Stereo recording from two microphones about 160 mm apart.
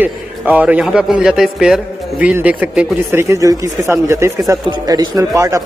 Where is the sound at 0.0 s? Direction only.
10° right (ahead or behind).